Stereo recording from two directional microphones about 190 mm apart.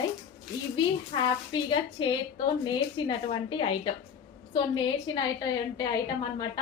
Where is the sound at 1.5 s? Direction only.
25° left (ahead or behind).